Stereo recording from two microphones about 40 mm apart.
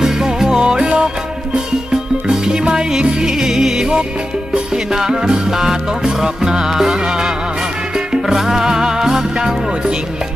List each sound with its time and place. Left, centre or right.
0.0 s music: centre
2.2 s music: centre
3.2 s music: centre